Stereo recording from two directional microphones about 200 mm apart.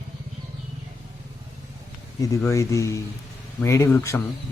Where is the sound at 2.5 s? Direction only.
15° left (ahead or behind).